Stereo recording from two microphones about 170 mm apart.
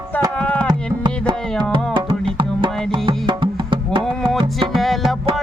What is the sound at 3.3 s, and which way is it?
Music, 30° right (ahead or behind).